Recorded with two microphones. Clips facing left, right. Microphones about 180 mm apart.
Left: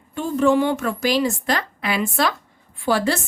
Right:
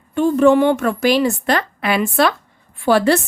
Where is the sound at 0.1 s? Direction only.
65° right (ahead or behind).